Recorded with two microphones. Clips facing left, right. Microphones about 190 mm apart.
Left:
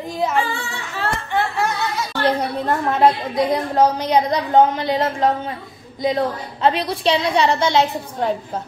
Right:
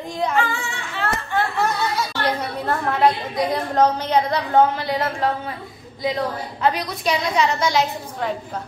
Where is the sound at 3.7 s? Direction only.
10° left (ahead or behind).